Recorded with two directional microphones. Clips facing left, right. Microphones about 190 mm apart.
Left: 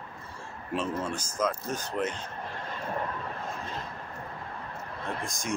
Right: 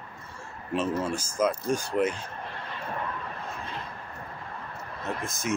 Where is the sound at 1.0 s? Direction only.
10° right (ahead or behind).